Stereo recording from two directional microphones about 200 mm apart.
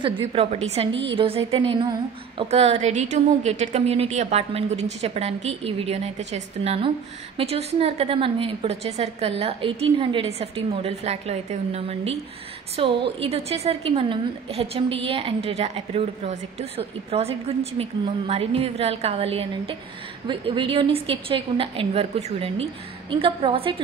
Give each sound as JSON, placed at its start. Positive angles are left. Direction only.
{"t": 0.0, "sound": "a woman's voice", "side_deg": -30}